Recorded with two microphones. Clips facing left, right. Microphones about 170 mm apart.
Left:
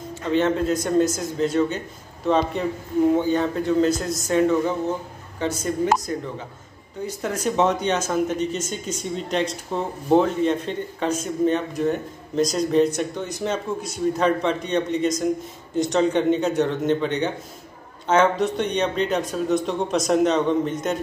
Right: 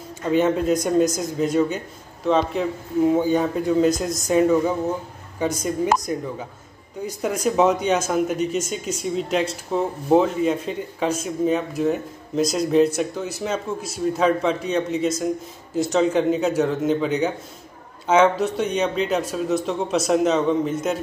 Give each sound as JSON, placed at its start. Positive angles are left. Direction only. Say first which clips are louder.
{"t": 0.3, "sound": "speech", "louder": "right 2 dB", "side_deg": -15}
{"t": 2.2, "sound": "speech", "louder": "right 1 dB", "side_deg": 0}